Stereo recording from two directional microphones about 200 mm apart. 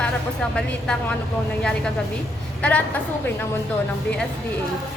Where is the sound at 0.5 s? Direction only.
5° left (ahead or behind).